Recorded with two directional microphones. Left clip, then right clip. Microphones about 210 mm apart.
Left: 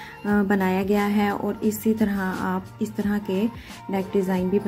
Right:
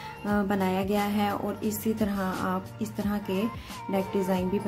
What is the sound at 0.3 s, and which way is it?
A woman's voice, 15° left (ahead or behind).